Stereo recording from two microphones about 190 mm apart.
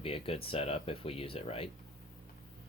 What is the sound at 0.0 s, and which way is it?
Speech, 30° left (ahead or behind).